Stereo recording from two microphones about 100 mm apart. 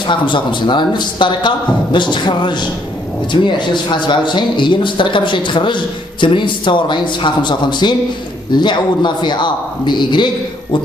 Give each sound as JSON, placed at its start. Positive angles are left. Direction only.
{"t": 0.1, "sound": "a man's voice", "side_deg": 55}